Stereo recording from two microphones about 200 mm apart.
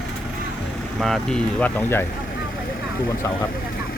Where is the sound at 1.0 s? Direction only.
Centre (ahead or behind).